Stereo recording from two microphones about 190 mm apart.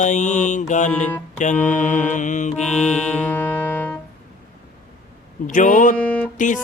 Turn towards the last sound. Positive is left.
turn(degrees=40)  # may be behind; listen again after turning